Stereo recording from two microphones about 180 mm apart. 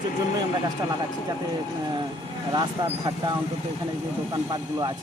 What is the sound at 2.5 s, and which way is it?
Speech, 25° right (ahead or behind).